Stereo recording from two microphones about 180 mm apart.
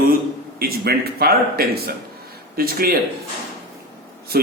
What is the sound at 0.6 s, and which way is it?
A man's voice, 60° right (ahead or behind).